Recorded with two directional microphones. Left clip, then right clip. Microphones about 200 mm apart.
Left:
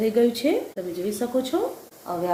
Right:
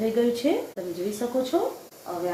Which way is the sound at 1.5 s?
30° left (ahead or behind).